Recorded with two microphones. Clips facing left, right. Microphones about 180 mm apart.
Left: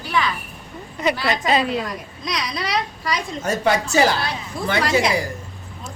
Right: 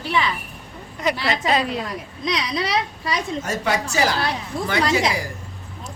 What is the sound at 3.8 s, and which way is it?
Speech, 25° left (ahead or behind).